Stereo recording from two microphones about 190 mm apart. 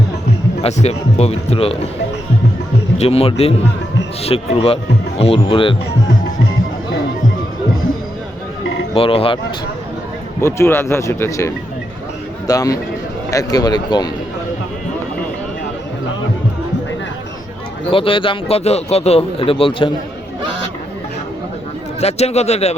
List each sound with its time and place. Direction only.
0.6 s speech: 35° left (ahead or behind)
3.0 s speech: 30° left (ahead or behind)
9.0 s a man's voice: 30° left (ahead or behind)
10.4 s a man's voice: 15° left (ahead or behind)
17.9 s a man's voice: 25° left (ahead or behind)
22.0 s speech: 35° left (ahead or behind)